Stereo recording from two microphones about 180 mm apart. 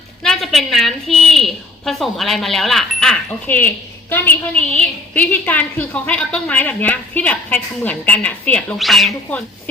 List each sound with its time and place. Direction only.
0.2 s a woman's voice: centre (ahead or behind)